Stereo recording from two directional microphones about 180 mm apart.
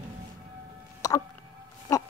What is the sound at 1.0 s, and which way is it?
Hiccup, 20° left (ahead or behind).